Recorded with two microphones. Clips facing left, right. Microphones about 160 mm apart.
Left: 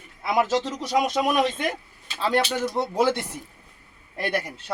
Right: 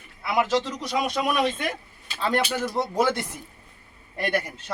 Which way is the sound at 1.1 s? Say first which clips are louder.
Left 2 dB; 20° left (ahead or behind).